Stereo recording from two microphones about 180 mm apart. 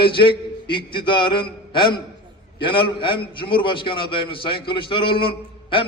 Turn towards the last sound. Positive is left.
turn(degrees=30)  # may be behind; listen again after turning